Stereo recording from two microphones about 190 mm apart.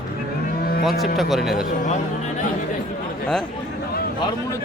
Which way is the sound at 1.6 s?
40° left (ahead or behind).